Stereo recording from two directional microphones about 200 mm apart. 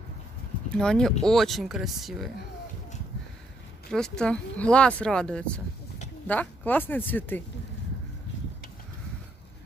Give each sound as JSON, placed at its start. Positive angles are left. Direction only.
{"t": 0.7, "sound": "speech", "side_deg": 5}
{"t": 3.9, "sound": "speech", "side_deg": 5}